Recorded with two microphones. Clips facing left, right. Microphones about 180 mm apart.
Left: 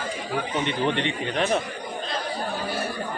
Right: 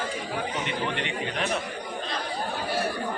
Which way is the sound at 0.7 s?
30° left (ahead or behind).